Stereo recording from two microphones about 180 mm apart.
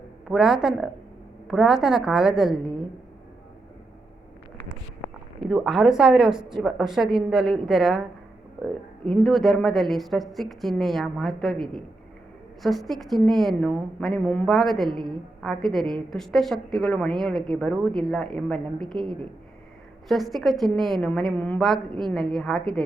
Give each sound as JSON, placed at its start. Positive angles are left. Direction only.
{"t": 0.3, "sound": "a woman's voice", "side_deg": -5}
{"t": 5.4, "sound": "a woman's voice", "side_deg": -5}
{"t": 9.0, "sound": "a woman's voice", "side_deg": 0}
{"t": 18.9, "sound": "speech", "side_deg": -25}
{"t": 20.1, "sound": "a woman's voice", "side_deg": 0}